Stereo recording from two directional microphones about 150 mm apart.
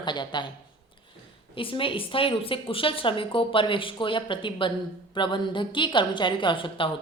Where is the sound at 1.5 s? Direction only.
35° left (ahead or behind).